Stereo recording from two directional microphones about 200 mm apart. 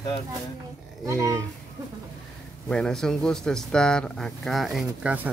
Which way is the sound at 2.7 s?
5° left (ahead or behind).